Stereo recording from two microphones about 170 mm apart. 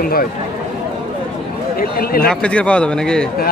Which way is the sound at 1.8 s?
60° left (ahead or behind).